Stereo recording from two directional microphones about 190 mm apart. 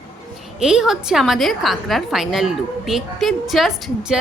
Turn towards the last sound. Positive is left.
turn(degrees=0)  # may be behind; listen again after turning